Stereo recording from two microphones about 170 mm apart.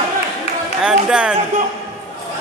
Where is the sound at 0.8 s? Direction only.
5° right (ahead or behind).